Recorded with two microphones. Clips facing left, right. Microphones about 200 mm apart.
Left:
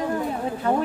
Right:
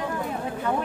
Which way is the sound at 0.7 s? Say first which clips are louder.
Left 4 dB; 30° left (ahead or behind).